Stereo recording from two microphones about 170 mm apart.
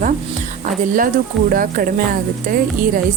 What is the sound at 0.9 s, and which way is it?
Speech, 55° right (ahead or behind).